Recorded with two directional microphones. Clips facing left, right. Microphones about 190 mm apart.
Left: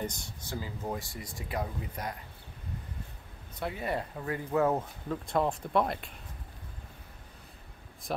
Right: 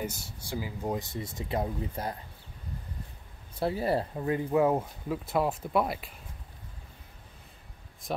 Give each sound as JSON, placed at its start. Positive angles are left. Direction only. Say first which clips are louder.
{"t": 0.0, "sound": "speech", "louder": "right 1 dB", "side_deg": -5}
{"t": 3.5, "sound": "speech", "louder": "right 6 dB", "side_deg": -30}
{"t": 4.5, "sound": "speech", "louder": "right 1 dB", "side_deg": -10}